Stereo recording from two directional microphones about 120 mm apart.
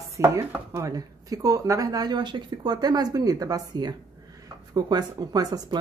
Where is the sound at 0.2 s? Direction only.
25° right (ahead or behind).